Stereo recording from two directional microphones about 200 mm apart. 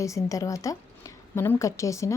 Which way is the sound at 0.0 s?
15° left (ahead or behind).